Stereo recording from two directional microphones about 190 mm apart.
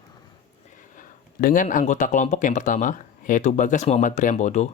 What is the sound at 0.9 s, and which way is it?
Speech, 45° left (ahead or behind).